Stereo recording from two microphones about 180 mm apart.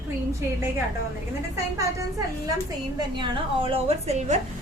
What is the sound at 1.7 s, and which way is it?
A woman's voice, 20° right (ahead or behind).